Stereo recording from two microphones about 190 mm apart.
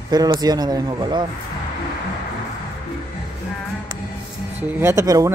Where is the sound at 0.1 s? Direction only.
20° right (ahead or behind).